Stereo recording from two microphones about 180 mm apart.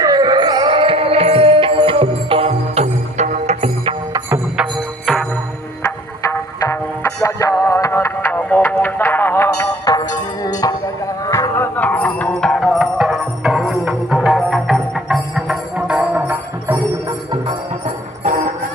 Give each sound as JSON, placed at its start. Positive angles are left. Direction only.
{"t": 0.0, "sound": "music", "side_deg": -20}
{"t": 4.6, "sound": "music", "side_deg": 0}
{"t": 5.9, "sound": "music", "side_deg": 15}
{"t": 17.8, "sound": "jingle bell", "side_deg": -45}